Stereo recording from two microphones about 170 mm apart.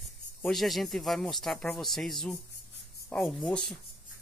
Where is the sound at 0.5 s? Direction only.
Centre (ahead or behind).